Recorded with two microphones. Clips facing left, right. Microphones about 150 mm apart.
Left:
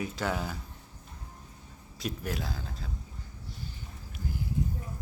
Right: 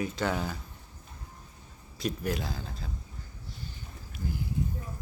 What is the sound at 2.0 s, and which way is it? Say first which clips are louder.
Speech: right 3 dB; 5° left (ahead or behind).